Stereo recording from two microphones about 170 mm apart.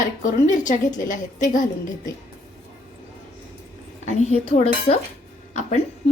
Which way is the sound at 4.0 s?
45° left (ahead or behind).